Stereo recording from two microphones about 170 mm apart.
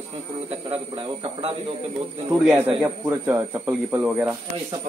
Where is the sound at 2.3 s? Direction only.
10° right (ahead or behind).